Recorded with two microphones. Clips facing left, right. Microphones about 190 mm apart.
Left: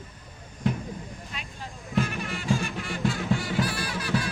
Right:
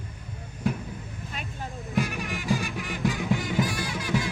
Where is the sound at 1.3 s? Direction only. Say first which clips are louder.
Right 6 dB; 45° right (ahead or behind).